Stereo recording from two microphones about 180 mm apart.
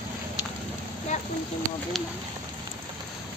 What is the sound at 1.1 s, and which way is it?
Speech, 40° left (ahead or behind).